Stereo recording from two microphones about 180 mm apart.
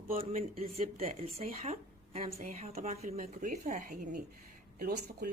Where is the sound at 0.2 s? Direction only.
35° right (ahead or behind).